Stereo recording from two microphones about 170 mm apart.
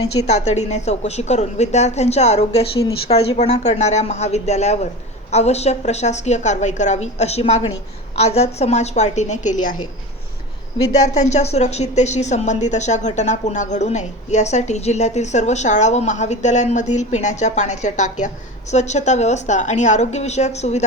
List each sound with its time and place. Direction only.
0.3 s a woman's voice: 40° left (ahead or behind)
11.0 s a woman's voice: 45° left (ahead or behind)